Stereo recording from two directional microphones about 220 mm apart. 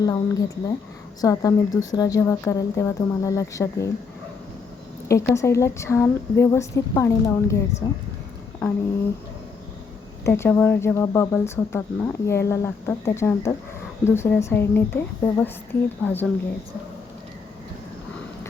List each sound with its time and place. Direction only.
0.0 s speech: 15° left (ahead or behind)
5.0 s speech: 15° left (ahead or behind)
10.2 s speech: 10° left (ahead or behind)